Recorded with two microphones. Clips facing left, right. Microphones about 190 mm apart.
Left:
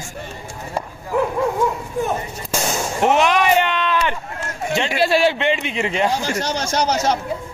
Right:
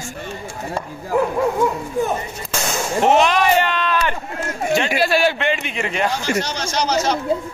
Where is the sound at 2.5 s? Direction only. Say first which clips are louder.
Right 1 dB; 15° left (ahead or behind).